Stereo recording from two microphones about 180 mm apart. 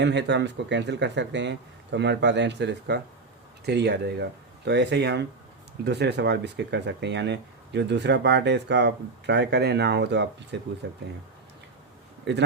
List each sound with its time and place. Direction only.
0.0 s speech: 75° right (ahead or behind)
12.3 s speech: 75° right (ahead or behind)